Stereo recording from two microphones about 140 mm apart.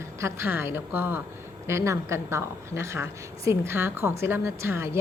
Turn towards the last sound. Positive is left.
turn(degrees=-20)  # may be behind; listen again after turning